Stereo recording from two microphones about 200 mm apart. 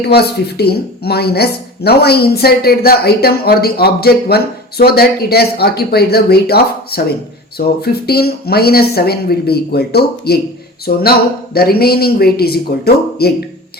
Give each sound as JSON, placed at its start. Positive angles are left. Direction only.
{"t": 0.0, "sound": "speech", "side_deg": 55}
{"t": 11.5, "sound": "speech", "side_deg": 50}